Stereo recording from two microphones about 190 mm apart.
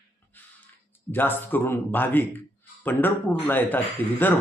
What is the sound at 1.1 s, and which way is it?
Speech, 10° left (ahead or behind).